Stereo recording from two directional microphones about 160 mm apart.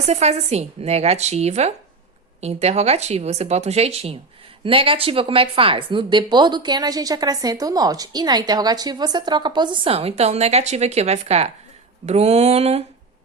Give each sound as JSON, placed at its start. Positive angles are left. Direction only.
{"t": 0.1, "sound": "a woman's voice", "side_deg": -40}